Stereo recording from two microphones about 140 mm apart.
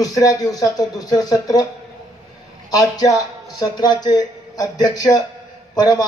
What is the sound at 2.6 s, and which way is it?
Speech, 25° left (ahead or behind).